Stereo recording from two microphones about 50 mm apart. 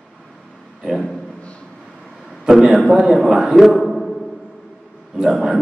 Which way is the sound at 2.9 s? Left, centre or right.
Centre.